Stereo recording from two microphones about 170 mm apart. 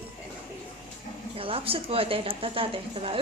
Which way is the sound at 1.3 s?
35° right (ahead or behind).